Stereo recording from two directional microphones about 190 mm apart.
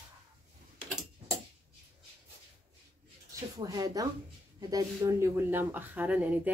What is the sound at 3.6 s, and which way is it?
A woman's voice, 20° right (ahead or behind).